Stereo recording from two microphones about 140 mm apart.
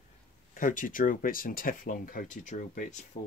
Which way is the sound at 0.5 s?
70° left (ahead or behind).